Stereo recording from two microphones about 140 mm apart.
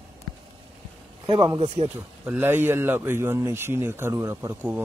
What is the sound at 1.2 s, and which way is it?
Speech, 40° right (ahead or behind).